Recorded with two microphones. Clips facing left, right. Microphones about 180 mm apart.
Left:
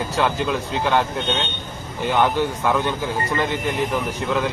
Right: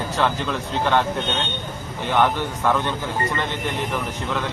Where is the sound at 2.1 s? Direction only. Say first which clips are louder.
Left 1 dB; 10° left (ahead or behind).